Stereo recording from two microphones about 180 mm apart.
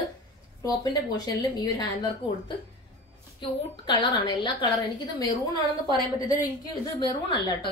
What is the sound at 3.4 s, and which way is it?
A woman's voice, 25° left (ahead or behind).